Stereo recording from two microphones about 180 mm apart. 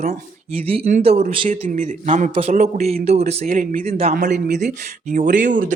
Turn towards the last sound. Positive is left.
turn(degrees=-45)  # may be behind; listen again after turning